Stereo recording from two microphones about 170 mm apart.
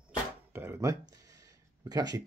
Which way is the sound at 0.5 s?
15° right (ahead or behind).